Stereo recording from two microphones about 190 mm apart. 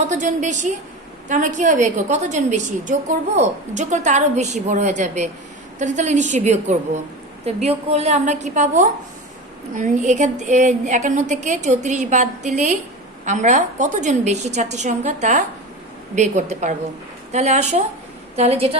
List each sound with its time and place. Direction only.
0.0 s a woman's voice: 40° right (ahead or behind)